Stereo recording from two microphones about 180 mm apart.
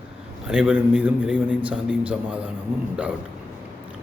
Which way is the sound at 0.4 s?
5° right (ahead or behind).